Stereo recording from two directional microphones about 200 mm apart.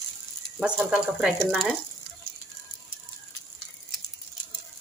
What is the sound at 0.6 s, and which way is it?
Speech, 5° right (ahead or behind).